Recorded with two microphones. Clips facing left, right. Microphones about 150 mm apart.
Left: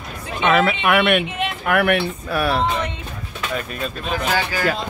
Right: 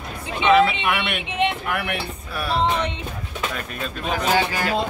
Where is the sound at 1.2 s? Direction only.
20° right (ahead or behind).